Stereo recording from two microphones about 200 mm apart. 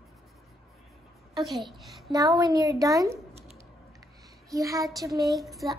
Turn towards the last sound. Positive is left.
turn(degrees=0)  # may be behind; listen again after turning